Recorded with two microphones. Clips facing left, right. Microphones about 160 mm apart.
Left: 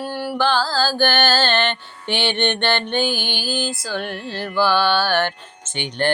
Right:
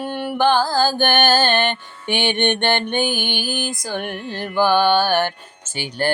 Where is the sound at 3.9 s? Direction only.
15° right (ahead or behind).